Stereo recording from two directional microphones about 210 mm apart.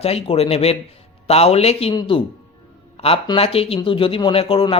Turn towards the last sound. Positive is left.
turn(degrees=25)  # may be behind; listen again after turning